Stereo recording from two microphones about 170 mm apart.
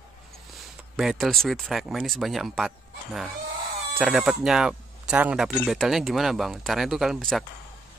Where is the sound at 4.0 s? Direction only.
Centre (ahead or behind).